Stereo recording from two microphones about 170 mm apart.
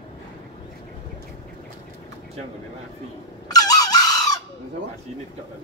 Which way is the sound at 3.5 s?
20° left (ahead or behind).